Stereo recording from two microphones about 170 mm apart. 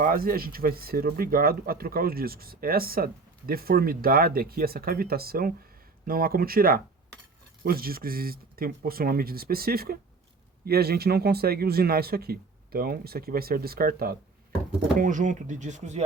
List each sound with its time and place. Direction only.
0.0 s speech: 55° right (ahead or behind)
14.9 s speech: 50° right (ahead or behind)